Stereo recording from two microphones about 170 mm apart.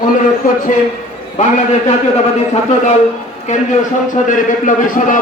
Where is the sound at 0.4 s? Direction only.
55° left (ahead or behind).